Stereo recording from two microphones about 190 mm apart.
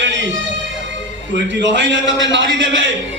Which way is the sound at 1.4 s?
70° right (ahead or behind).